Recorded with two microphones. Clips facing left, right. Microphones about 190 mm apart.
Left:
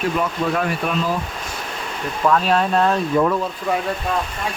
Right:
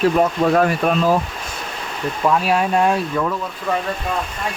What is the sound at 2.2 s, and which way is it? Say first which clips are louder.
Speech: even; 10° right (ahead or behind).